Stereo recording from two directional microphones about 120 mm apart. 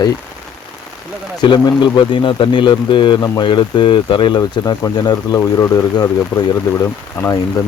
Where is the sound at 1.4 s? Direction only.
35° left (ahead or behind).